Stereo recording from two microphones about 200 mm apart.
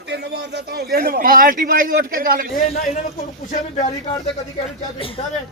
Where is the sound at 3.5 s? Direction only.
35° left (ahead or behind).